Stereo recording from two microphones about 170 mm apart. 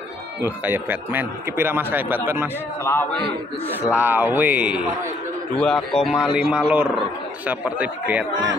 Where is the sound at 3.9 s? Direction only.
10° right (ahead or behind).